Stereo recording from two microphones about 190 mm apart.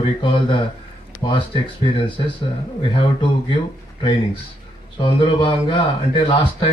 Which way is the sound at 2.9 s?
25° left (ahead or behind).